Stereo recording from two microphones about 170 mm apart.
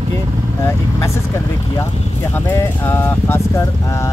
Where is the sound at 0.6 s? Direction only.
15° left (ahead or behind).